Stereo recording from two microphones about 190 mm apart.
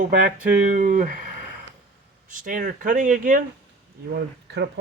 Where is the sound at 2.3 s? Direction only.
45° right (ahead or behind).